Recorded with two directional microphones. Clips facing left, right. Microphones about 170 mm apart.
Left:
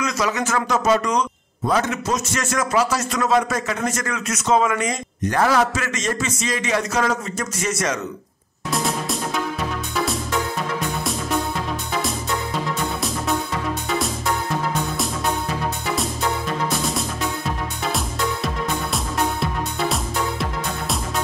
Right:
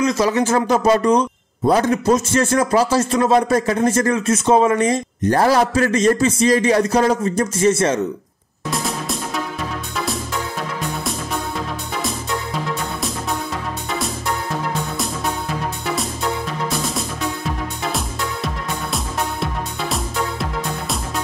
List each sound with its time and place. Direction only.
0.0 s a man's voice: 30° right (ahead or behind)
8.7 s music: centre (ahead or behind)
17.9 s music: centre (ahead or behind)